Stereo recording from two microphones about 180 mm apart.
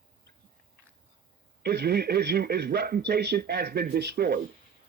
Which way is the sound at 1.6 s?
65° right (ahead or behind).